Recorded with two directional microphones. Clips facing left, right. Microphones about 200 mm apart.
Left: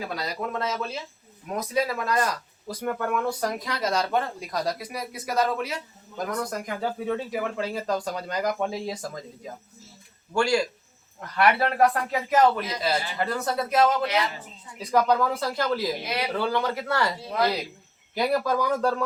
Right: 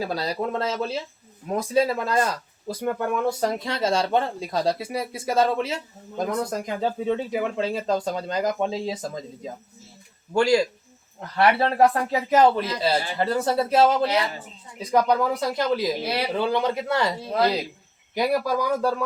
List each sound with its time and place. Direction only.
0.0 s speech: 30° right (ahead or behind)
14.8 s speech: 20° right (ahead or behind)
16.0 s speech: 30° right (ahead or behind)
16.4 s speech: 20° right (ahead or behind)